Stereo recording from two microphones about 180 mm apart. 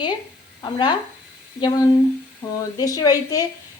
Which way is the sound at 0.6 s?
25° left (ahead or behind).